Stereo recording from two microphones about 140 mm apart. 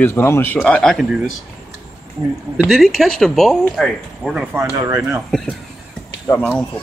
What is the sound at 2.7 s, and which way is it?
Speech, centre (ahead or behind).